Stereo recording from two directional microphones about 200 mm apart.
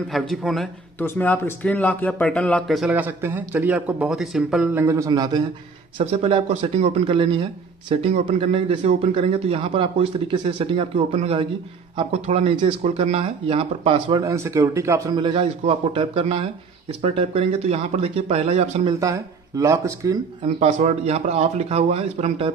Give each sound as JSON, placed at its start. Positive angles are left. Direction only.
{"t": 0.1, "sound": "a man's voice", "side_deg": 0}
{"t": 14.2, "sound": "a man's voice", "side_deg": -15}
{"t": 18.9, "sound": "speech", "side_deg": -15}
{"t": 20.4, "sound": "speech", "side_deg": -35}